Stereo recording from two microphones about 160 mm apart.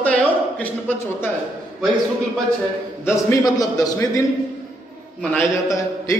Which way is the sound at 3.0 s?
20° left (ahead or behind).